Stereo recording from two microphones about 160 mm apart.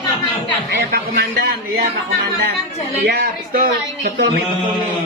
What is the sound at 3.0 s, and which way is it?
Speech, 70° right (ahead or behind).